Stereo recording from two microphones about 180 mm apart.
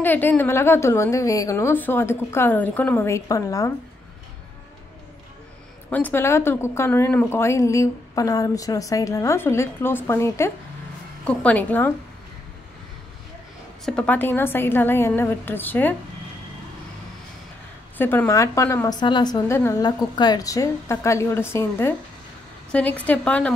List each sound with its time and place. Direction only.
0.0 s speech: 10° left (ahead or behind)
5.9 s speech: 10° left (ahead or behind)
13.8 s speech: 5° left (ahead or behind)
17.9 s speech: 10° left (ahead or behind)